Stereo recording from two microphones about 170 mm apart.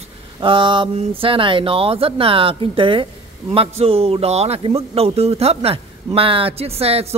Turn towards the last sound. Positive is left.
turn(degrees=-35)  # may be behind; listen again after turning